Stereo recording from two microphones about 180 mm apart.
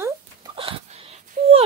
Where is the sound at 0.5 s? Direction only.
30° right (ahead or behind).